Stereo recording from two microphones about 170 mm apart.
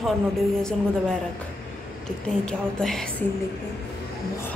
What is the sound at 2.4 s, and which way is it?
Speech, 5° left (ahead or behind).